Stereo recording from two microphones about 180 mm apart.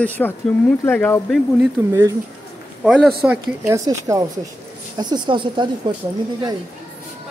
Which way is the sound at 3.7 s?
20° right (ahead or behind).